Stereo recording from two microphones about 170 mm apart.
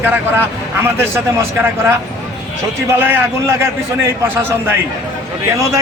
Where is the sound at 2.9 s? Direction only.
10° right (ahead or behind).